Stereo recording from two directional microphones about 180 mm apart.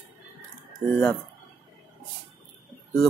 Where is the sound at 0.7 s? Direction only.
Centre (ahead or behind).